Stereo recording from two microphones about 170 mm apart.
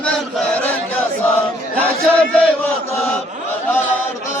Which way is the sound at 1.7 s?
5° left (ahead or behind).